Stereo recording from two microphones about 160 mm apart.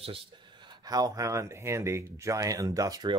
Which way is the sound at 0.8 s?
25° right (ahead or behind).